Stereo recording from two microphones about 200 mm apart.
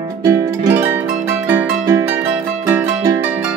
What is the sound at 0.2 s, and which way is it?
Music, 15° right (ahead or behind).